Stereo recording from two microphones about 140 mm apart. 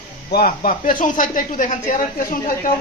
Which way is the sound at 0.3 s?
85° left.